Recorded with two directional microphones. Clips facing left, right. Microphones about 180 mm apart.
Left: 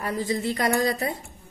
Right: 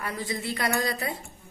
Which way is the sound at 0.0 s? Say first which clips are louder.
Left 6 dB; 40° left (ahead or behind).